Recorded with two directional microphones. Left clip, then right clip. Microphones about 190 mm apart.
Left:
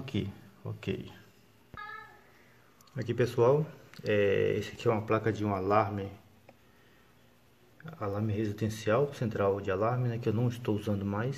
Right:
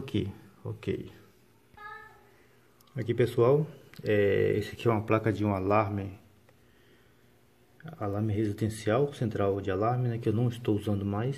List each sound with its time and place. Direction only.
0.0 s a sound: 25° right (ahead or behind)
0.7 s speech: 20° right (ahead or behind)
3.0 s speech: 10° right (ahead or behind)
7.8 s speech: 15° right (ahead or behind)